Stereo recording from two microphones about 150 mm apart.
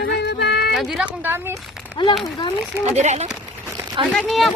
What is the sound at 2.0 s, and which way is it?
Child singing, 30° left (ahead or behind).